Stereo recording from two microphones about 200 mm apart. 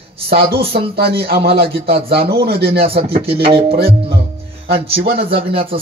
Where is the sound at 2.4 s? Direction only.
50° right (ahead or behind).